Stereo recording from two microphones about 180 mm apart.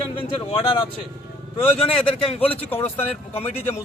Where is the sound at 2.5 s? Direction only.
10° left (ahead or behind).